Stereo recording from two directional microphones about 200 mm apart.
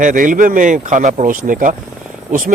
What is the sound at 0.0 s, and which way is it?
Speech, 40° right (ahead or behind).